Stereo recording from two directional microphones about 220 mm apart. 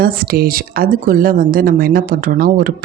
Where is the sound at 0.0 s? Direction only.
40° right (ahead or behind).